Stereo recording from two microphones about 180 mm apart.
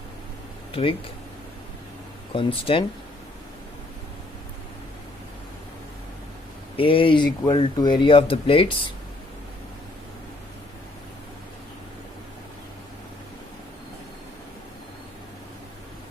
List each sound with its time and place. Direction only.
0.7 s speech: 30° left (ahead or behind)
2.3 s speech: 30° left (ahead or behind)
6.7 s speech: 30° left (ahead or behind)